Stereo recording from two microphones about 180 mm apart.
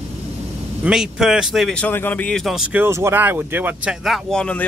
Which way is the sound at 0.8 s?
5° right (ahead or behind).